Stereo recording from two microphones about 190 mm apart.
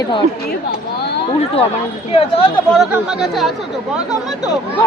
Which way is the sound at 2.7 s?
5° right (ahead or behind).